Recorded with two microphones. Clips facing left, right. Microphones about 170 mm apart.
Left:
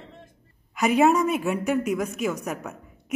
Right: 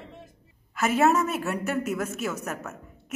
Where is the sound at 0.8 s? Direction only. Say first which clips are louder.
Left 3 dB; centre (ahead or behind).